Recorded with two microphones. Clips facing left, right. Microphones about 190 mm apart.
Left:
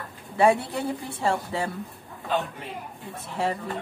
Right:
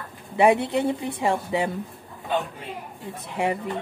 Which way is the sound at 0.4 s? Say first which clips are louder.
Right 2 dB; 20° right (ahead or behind).